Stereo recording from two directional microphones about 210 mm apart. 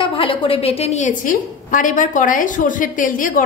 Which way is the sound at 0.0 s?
25° left (ahead or behind).